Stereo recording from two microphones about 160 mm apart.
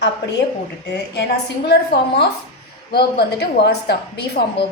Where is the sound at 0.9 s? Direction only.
90° left.